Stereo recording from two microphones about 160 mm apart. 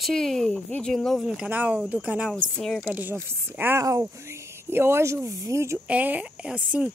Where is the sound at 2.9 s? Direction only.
10° right (ahead or behind).